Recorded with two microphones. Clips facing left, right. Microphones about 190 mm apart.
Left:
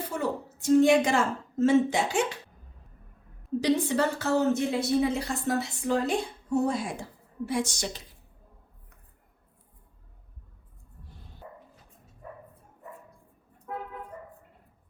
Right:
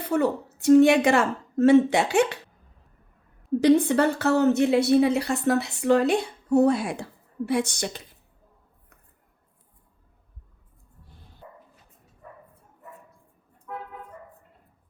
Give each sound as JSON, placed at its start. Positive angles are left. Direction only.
{"t": 0.1, "sound": "speech", "side_deg": -65}
{"t": 3.6, "sound": "speech", "side_deg": -55}